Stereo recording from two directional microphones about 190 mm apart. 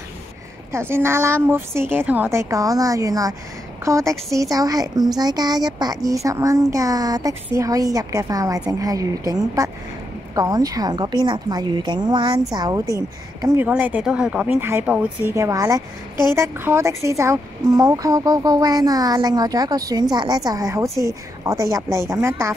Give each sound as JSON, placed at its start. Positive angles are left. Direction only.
{"t": 0.7, "sound": "a woman's voice", "side_deg": -15}